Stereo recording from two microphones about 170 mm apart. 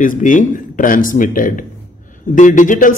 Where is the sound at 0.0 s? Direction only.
50° left (ahead or behind).